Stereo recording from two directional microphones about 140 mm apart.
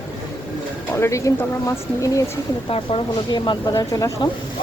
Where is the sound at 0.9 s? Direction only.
20° left (ahead or behind).